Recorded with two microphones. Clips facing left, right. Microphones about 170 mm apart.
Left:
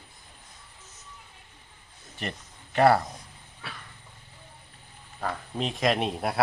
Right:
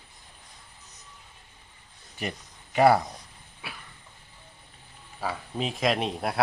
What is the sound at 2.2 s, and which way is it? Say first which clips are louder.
Speech: right 1 dB; 5° right (ahead or behind).